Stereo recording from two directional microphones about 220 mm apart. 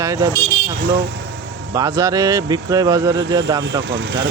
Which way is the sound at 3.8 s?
50° right (ahead or behind).